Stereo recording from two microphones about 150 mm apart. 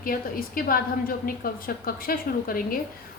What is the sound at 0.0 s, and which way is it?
A woman's voice, 70° left (ahead or behind).